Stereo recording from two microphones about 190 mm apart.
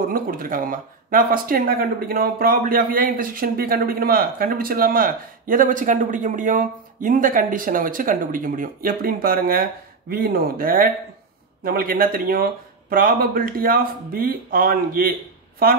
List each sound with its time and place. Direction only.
0.1 s speech: 50° right (ahead or behind)